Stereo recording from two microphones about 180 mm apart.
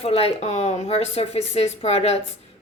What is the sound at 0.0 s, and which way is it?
Speech, 35° left (ahead or behind).